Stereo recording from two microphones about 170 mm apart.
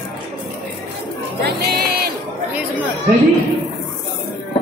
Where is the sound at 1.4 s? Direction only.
70° right (ahead or behind).